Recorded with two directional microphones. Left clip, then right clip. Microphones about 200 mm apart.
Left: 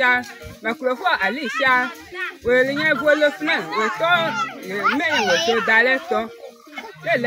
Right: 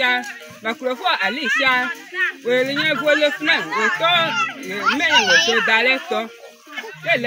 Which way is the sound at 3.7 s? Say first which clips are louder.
Right 1 dB; 50° left (ahead or behind).